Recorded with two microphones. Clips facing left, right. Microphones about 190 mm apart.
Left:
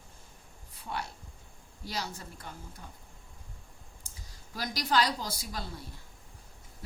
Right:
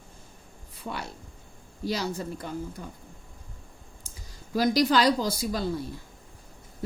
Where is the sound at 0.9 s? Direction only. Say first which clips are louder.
Right 3 dB; 90° right.